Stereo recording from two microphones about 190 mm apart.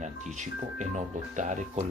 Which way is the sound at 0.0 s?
40° right (ahead or behind).